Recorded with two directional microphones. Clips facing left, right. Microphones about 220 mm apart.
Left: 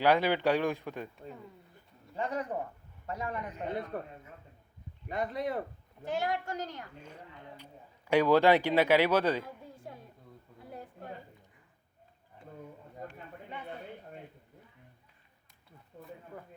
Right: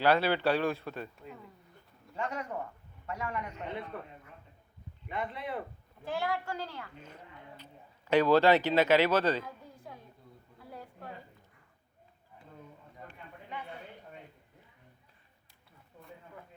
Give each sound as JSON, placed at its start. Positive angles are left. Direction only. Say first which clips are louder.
{"t": 0.0, "sound": "speech", "louder": "even", "side_deg": 15}
{"t": 2.1, "sound": "a man's voice", "louder": "left 2 dB", "side_deg": 35}
{"t": 5.0, "sound": "speech", "louder": "left 4 dB", "side_deg": 40}
{"t": 6.1, "sound": "a woman's voice", "louder": "left 1 dB", "side_deg": 20}
{"t": 13.0, "sound": "a sound", "louder": "left 7 dB", "side_deg": 40}
{"t": 15.9, "sound": "a sound", "louder": "left 5 dB", "side_deg": 45}